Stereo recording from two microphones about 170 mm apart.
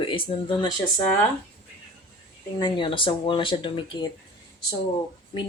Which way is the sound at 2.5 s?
25° left (ahead or behind).